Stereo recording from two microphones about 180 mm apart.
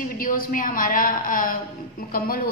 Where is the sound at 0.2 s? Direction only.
55° left (ahead or behind).